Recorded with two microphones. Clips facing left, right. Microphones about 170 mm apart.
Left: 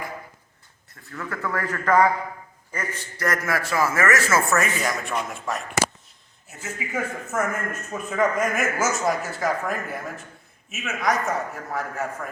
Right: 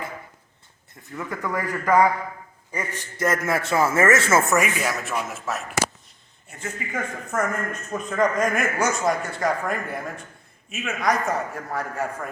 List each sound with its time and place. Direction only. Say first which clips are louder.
1.0 s a man's voice: right 1 dB; 15° right (ahead or behind)
2.7 s a man's voice: right 2 dB; 20° right (ahead or behind)
4.8 s a man's voice: even; 5° right (ahead or behind)